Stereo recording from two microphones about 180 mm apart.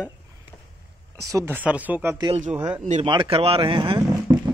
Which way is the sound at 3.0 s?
30° right (ahead or behind).